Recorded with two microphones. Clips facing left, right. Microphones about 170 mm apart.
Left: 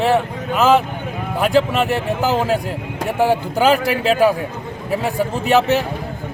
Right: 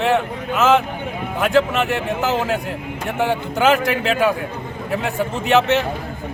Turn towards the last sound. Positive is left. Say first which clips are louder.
# left 1 dB
turn(degrees=35)  # may be behind; listen again after turning